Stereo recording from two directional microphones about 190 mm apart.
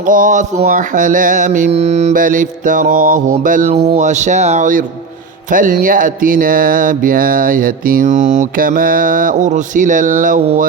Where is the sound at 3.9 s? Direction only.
40° right (ahead or behind).